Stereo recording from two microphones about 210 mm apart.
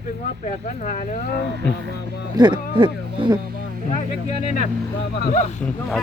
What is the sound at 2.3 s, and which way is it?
Speech, 20° right (ahead or behind).